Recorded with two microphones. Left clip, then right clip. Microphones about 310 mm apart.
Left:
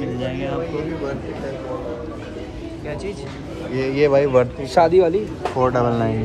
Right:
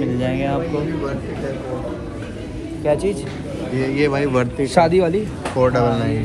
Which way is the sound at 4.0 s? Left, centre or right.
Left.